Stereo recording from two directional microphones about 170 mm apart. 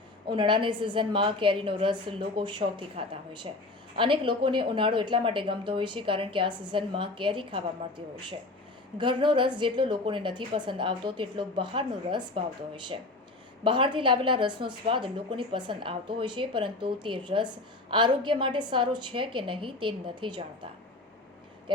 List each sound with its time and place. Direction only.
0.3 s a woman's voice: 30° right (ahead or behind)